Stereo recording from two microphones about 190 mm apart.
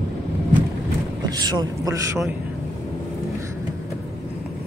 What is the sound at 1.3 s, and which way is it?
Speech, 20° right (ahead or behind).